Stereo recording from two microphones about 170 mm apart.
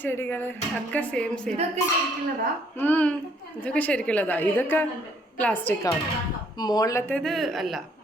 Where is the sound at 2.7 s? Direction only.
10° left (ahead or behind).